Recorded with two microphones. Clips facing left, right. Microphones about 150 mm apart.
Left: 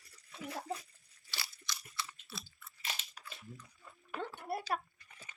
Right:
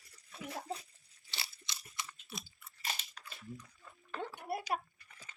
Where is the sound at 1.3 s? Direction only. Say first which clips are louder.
Left 2 dB; 25° right (ahead or behind).